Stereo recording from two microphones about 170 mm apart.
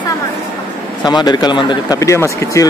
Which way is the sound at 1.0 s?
25° left (ahead or behind).